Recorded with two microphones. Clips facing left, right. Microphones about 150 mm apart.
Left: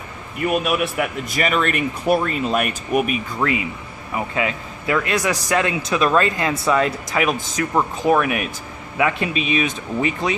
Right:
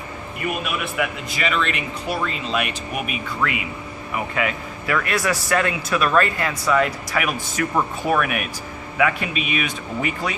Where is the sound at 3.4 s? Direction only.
30° left (ahead or behind).